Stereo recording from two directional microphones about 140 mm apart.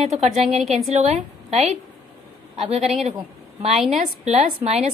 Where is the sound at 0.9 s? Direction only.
50° right (ahead or behind).